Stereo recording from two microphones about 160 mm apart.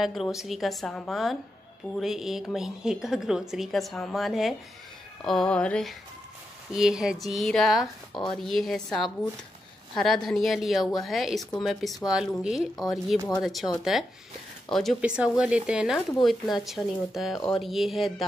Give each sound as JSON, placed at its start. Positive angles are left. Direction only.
{"t": 0.0, "sound": "speech", "side_deg": 0}
{"t": 8.1, "sound": "speech", "side_deg": 30}
{"t": 8.5, "sound": "speech", "side_deg": 0}